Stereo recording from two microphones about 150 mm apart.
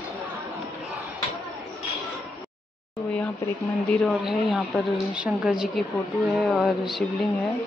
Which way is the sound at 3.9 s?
Centre (ahead or behind).